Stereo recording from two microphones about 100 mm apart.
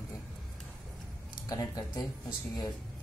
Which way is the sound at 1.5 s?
40° left (ahead or behind).